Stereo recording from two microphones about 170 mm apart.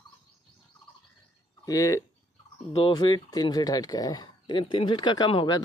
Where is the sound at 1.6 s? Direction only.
20° left (ahead or behind).